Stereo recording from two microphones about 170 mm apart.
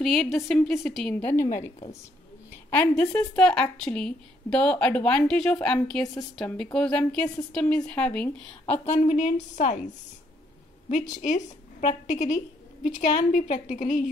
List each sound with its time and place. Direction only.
0.0 s a woman's voice: centre (ahead or behind)
2.7 s a woman's voice: 10° left (ahead or behind)
9.0 s a woman's voice: 45° left (ahead or behind)
11.0 s a woman's voice: 45° left (ahead or behind)